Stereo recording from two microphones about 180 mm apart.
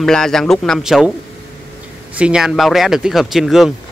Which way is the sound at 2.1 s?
5° right (ahead or behind).